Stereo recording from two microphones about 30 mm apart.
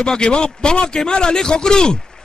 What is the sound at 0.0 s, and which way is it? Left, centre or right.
A man's voice, left.